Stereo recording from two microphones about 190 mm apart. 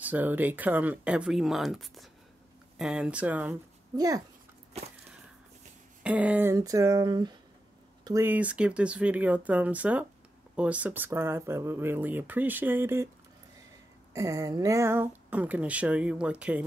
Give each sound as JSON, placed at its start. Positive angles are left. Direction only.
{"t": 0.0, "sound": "speech", "side_deg": -10}
{"t": 3.9, "sound": "speech", "side_deg": -20}
{"t": 6.0, "sound": "speech", "side_deg": -5}
{"t": 14.1, "sound": "speech", "side_deg": -15}